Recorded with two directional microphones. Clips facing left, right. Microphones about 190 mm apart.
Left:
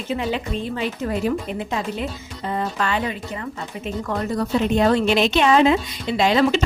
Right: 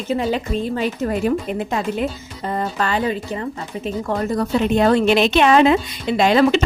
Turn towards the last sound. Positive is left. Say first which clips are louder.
# right 3 dB
turn(degrees=-60)  # may be behind; listen again after turning